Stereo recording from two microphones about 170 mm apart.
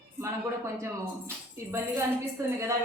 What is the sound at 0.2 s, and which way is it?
A woman's voice, 15° right (ahead or behind).